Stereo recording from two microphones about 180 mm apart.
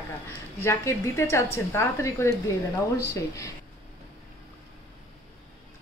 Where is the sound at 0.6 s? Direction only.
15° left (ahead or behind).